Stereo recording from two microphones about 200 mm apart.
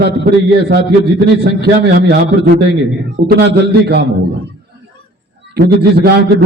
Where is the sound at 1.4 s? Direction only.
55° right (ahead or behind).